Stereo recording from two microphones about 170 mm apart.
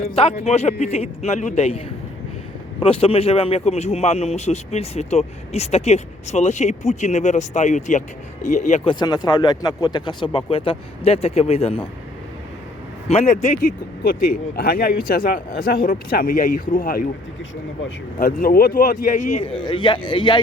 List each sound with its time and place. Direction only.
0.1 s a man's voice: 35° left (ahead or behind)
2.8 s a man's voice: 35° left (ahead or behind)
13.1 s a man's voice: 40° left (ahead or behind)